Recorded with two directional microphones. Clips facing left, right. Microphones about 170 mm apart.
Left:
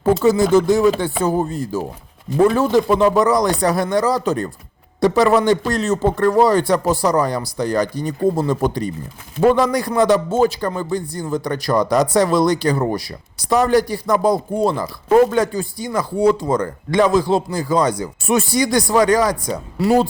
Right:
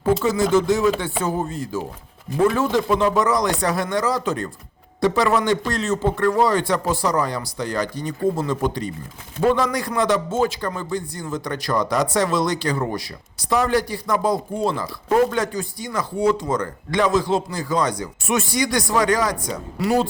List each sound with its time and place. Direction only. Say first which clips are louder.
0.0 s a man's voice: left 4 dB; 35° left (ahead or behind)